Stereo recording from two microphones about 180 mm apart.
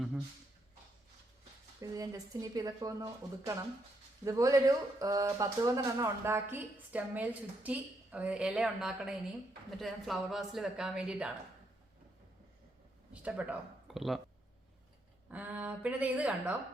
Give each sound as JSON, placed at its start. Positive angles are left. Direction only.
{"t": 1.8, "sound": "speech", "side_deg": -20}
{"t": 13.2, "sound": "speech", "side_deg": -10}
{"t": 15.3, "sound": "speech", "side_deg": -10}